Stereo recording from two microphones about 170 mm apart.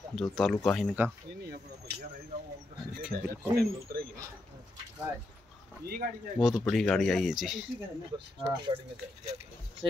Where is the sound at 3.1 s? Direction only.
65° right (ahead or behind).